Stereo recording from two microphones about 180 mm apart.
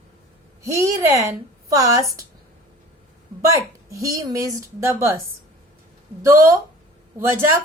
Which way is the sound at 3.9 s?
15° right (ahead or behind).